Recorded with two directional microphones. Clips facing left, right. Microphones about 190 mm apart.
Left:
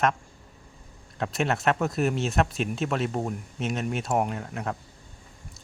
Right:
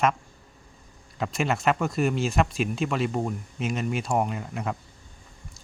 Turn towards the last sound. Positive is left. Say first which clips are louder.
# right 1 dB
turn(degrees=0)  # may be behind; listen again after turning